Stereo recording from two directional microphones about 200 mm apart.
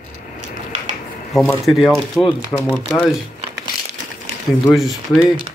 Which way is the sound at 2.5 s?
15° left (ahead or behind).